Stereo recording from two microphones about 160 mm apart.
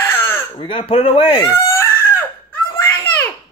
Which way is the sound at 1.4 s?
15° left (ahead or behind).